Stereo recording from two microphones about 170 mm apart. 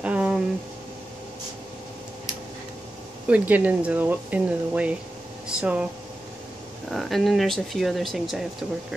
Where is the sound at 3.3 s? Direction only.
10° right (ahead or behind).